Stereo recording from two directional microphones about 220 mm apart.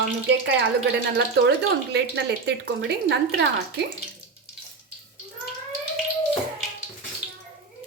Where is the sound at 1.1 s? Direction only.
50° right (ahead or behind).